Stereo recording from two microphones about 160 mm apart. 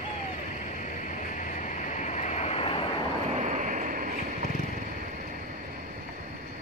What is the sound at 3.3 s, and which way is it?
Vehicle, 50° right (ahead or behind).